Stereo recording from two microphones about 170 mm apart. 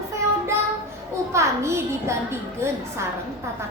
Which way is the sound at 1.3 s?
15° right (ahead or behind).